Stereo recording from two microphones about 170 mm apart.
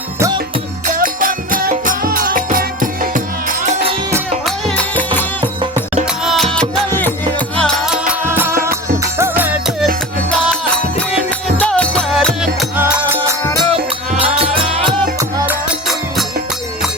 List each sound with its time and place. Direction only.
0.9 s music: 55° right (ahead or behind)
3.6 s music: 45° right (ahead or behind)
4.4 s music: 5° left (ahead or behind)
5.7 s music: 45° right (ahead or behind)
6.2 s music: centre (ahead or behind)
8.2 s music: 15° right (ahead or behind)
11.1 s music: 5° left (ahead or behind)
13.6 s music: 35° right (ahead or behind)
15.4 s music: centre (ahead or behind)